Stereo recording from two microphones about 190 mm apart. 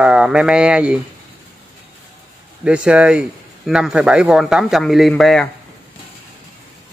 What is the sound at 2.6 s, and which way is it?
Speech, 5° right (ahead or behind).